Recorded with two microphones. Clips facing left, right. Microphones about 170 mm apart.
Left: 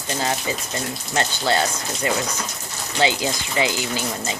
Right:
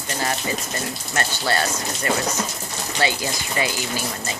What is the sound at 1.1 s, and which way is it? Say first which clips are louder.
Speech: left 3 dB; 20° left (ahead or behind).